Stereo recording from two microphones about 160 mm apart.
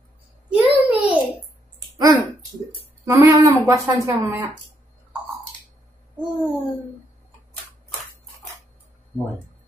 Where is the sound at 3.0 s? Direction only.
15° right (ahead or behind).